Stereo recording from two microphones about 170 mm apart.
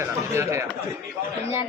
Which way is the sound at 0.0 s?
15° right (ahead or behind).